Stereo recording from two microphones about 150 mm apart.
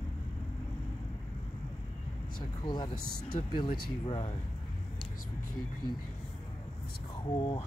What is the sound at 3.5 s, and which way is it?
Speech, 35° left (ahead or behind).